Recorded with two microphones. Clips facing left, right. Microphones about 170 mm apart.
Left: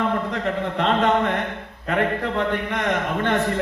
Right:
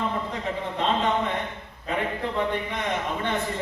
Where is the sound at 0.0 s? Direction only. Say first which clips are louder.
Left 5 dB; 65° left (ahead or behind).